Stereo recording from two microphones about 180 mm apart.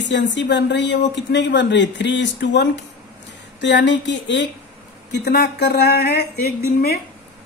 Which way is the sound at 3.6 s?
80° left.